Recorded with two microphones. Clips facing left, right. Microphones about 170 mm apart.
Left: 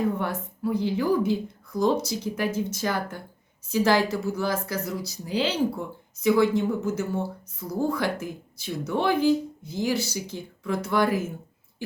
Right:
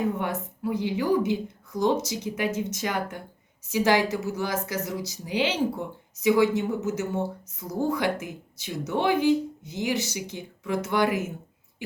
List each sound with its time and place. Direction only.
0.2 s a woman's voice: 15° right (ahead or behind)